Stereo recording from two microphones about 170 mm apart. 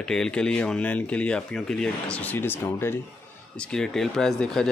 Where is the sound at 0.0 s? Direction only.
5° left (ahead or behind).